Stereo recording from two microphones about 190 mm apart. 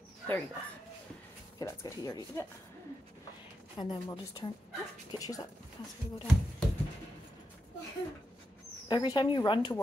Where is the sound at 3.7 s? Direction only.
20° left (ahead or behind).